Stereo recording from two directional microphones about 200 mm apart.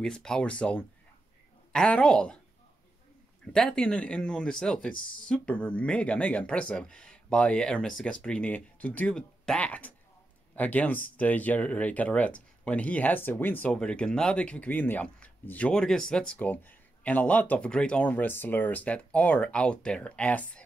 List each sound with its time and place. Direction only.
0.0 s speech: 5° left (ahead or behind)
3.5 s speech: 5° left (ahead or behind)